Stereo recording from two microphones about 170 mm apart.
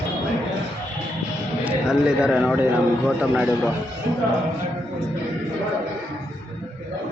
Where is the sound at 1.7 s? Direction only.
5° right (ahead or behind).